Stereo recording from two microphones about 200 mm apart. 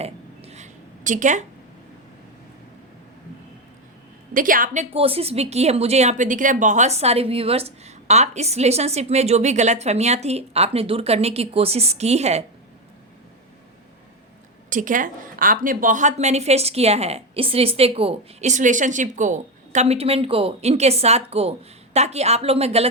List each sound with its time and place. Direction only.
0.0 s a sound: 30° right (ahead or behind)
4.4 s a woman's voice: 45° right (ahead or behind)
14.7 s a woman's voice: 40° right (ahead or behind)